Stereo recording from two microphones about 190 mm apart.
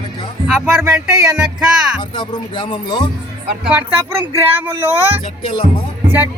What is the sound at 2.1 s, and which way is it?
Music, 25° left (ahead or behind).